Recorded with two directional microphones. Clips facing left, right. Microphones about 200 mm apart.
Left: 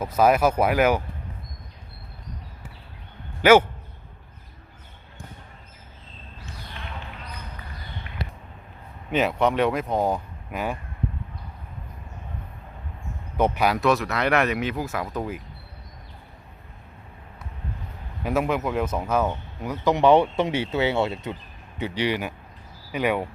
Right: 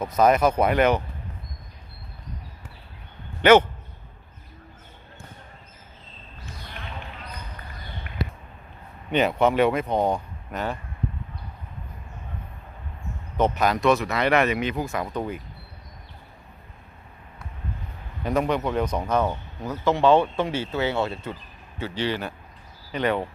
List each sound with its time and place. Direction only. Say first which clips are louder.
0.0 s speech: even; 5° left (ahead or behind)
3.4 s speech: even; 10° left (ahead or behind)
9.0 s speech: right 1 dB; centre (ahead or behind)
13.3 s speech: even; 10° left (ahead or behind)
18.2 s speech: even; 5° left (ahead or behind)
19.8 s speech: left 1 dB; 20° left (ahead or behind)